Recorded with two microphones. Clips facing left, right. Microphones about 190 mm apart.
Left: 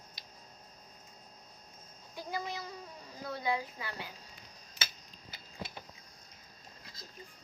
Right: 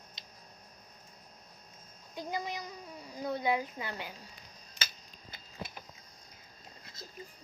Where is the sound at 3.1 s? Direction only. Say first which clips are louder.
Right 3 dB; 20° right (ahead or behind).